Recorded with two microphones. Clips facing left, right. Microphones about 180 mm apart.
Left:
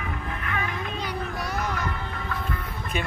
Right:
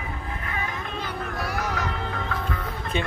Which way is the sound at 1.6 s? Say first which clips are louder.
Right 1 dB; 80° right.